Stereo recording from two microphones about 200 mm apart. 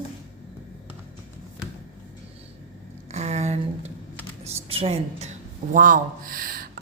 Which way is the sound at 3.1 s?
35° right (ahead or behind).